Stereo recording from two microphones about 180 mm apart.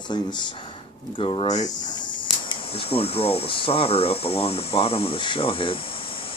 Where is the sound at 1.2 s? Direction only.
25° left (ahead or behind).